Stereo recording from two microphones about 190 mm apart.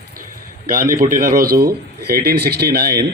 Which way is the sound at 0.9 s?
45° right (ahead or behind).